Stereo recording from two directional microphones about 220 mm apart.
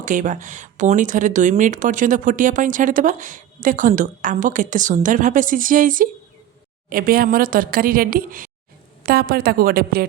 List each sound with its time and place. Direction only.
0.0 s a woman's voice: 35° right (ahead or behind)